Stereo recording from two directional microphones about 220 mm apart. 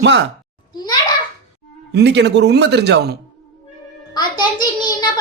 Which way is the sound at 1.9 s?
50° right (ahead or behind).